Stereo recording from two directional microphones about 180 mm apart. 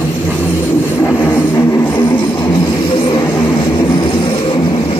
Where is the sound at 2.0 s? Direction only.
25° left (ahead or behind).